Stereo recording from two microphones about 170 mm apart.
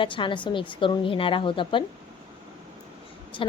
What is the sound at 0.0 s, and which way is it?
A woman's voice, 30° left (ahead or behind).